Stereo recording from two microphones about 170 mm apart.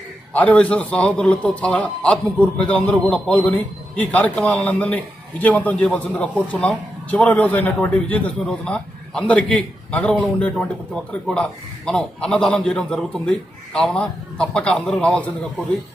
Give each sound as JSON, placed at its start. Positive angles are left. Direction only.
{"t": 0.3, "sound": "a man's voice", "side_deg": 10}